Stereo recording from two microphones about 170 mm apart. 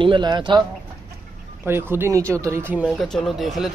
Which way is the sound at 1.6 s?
15° right (ahead or behind).